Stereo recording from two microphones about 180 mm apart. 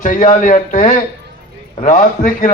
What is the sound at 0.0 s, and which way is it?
A man's voice, 45° left (ahead or behind).